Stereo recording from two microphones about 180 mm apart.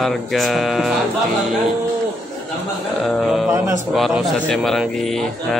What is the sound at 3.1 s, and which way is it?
Speech, centre (ahead or behind).